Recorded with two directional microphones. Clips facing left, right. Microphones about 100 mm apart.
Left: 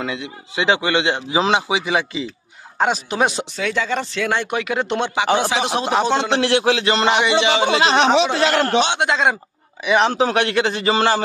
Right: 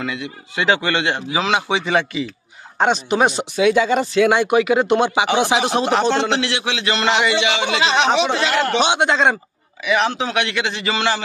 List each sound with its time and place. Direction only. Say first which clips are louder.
0.0 s a man's voice: even; 25° left (ahead or behind)
1.7 s a man's voice: right 1 dB; 5° left (ahead or behind)
3.5 s speech: right 6 dB; 15° right (ahead or behind)
5.6 s a man's voice: right 2 dB; centre (ahead or behind)
5.9 s a man's voice: left 1 dB; 15° left (ahead or behind)
6.3 s a man's voice: left 5 dB; 40° left (ahead or behind)
7.1 s a man's voice: right 1 dB; 15° left (ahead or behind)
7.3 s a man's voice: left 3 dB; 35° left (ahead or behind)
8.7 s a man's voice: right 1 dB; 5° right (ahead or behind)
9.8 s a man's voice: left 3 dB; 35° left (ahead or behind)